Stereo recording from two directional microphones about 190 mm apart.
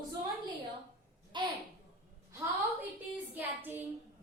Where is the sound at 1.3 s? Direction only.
25° right (ahead or behind).